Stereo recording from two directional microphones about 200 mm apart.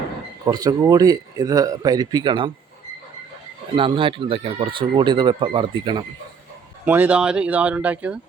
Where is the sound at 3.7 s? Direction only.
25° right (ahead or behind).